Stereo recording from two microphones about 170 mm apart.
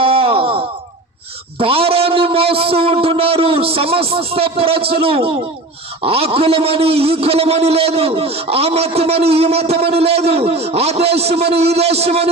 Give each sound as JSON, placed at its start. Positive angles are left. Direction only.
{"t": 0.0, "sound": "groan", "side_deg": -30}
{"t": 1.5, "sound": "a sound", "side_deg": -35}
{"t": 2.5, "sound": "a man's voice", "side_deg": -35}